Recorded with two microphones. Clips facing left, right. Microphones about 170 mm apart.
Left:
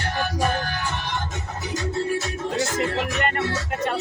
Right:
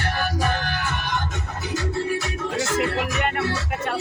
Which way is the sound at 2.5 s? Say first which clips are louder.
Right 1 dB; 5° right (ahead or behind).